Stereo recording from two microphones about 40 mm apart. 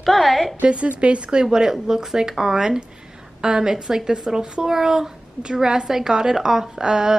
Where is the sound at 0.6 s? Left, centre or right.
Right.